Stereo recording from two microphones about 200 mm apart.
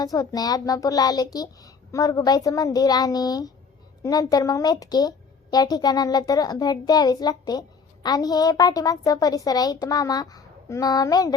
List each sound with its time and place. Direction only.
0.0 s a woman's voice: 20° left (ahead or behind)